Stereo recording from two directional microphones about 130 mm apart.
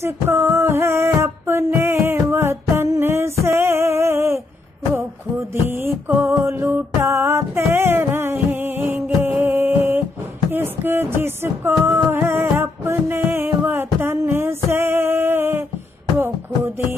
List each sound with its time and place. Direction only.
0.0 s music: 20° right (ahead or behind)
3.4 s a sound: 20° right (ahead or behind)
5.7 s music: 15° right (ahead or behind)